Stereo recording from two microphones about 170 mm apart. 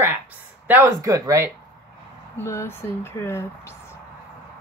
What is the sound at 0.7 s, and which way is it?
Speech, 10° right (ahead or behind).